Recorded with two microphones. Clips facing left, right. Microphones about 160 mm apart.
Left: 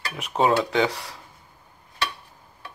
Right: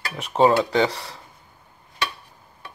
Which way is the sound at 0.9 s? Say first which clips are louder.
Right 1 dB; 30° right (ahead or behind).